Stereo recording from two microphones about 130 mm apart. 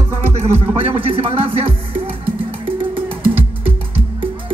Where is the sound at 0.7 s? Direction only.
45° right (ahead or behind).